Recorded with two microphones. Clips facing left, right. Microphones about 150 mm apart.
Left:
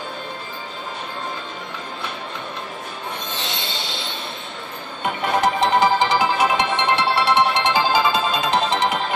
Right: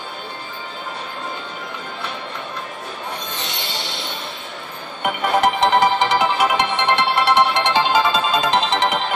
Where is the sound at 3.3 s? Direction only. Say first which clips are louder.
Even; 20° left (ahead or behind).